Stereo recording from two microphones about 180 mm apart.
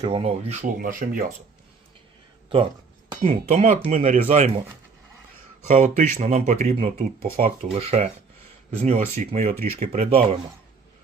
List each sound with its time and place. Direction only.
0.0 s speech: 35° right (ahead or behind)
0.8 s speech: 50° right (ahead or behind)
3.2 s speech: 40° right (ahead or behind)
5.6 s speech: 45° right (ahead or behind)
9.7 s speech: 35° right (ahead or behind)